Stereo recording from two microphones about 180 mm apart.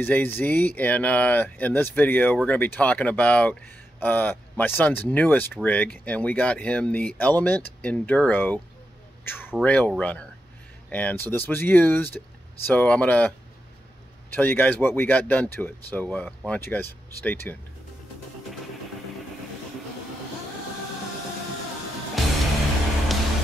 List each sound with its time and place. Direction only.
0.0 s speech: 10° left (ahead or behind)
9.2 s a sound: 10° left (ahead or behind)
9.5 s speech: 5° left (ahead or behind)
14.3 s speech: 10° left (ahead or behind)
22.2 s music: centre (ahead or behind)